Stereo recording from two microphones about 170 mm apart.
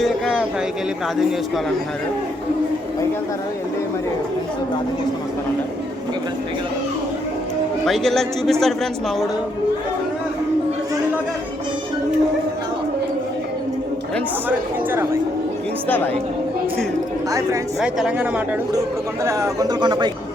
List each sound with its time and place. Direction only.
0.0 s a sound: centre (ahead or behind)
7.9 s a man's voice: centre (ahead or behind)
17.7 s a man's voice: 5° right (ahead or behind)
19.2 s speech: 20° right (ahead or behind)